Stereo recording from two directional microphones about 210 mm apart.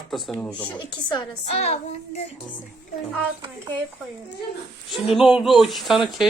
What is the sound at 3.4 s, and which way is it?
Speech, 20° right (ahead or behind).